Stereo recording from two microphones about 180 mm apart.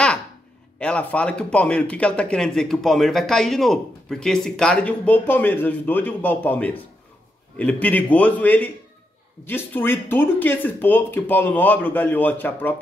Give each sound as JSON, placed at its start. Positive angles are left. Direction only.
{"t": 0.7, "sound": "speech", "side_deg": 5}